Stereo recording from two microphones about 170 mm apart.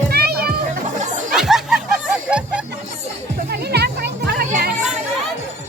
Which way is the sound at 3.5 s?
75° right (ahead or behind).